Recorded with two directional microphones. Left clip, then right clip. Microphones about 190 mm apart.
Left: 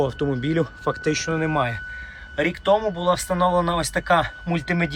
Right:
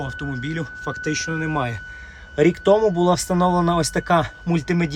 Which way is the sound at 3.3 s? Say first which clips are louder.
Right 1 dB; 35° right (ahead or behind).